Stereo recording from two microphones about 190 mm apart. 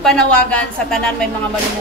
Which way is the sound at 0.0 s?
5° left (ahead or behind).